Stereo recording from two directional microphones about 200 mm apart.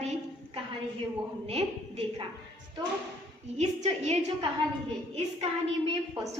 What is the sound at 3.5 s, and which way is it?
Speech, 35° right (ahead or behind).